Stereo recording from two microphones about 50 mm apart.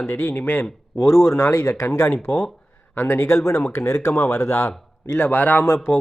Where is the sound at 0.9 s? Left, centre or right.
Left.